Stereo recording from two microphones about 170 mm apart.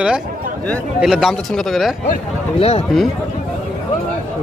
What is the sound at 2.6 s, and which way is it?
Speech, 35° left (ahead or behind).